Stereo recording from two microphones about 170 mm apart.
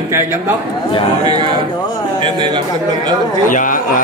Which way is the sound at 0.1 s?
10° right (ahead or behind).